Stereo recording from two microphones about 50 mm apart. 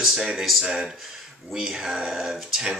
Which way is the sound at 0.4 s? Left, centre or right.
Centre.